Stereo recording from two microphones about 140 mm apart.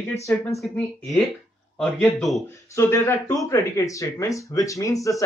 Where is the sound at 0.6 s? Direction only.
5° left (ahead or behind).